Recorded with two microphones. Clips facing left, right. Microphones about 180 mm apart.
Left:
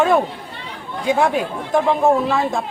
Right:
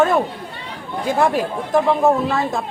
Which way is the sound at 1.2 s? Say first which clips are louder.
Right 4 dB; centre (ahead or behind).